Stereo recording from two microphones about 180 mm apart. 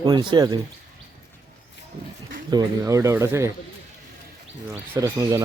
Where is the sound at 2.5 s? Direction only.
20° right (ahead or behind).